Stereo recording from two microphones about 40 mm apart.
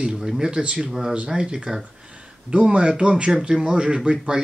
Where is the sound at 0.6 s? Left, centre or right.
Right.